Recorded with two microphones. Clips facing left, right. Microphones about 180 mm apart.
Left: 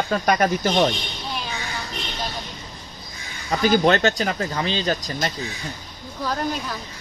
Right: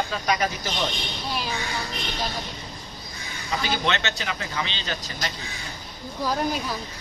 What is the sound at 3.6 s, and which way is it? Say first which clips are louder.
Speech: left 10 dB; 45° left (ahead or behind).